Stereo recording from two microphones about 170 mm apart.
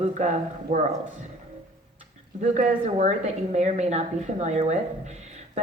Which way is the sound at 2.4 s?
45° right (ahead or behind).